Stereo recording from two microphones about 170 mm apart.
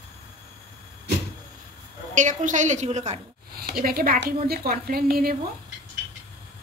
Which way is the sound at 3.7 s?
60° right (ahead or behind).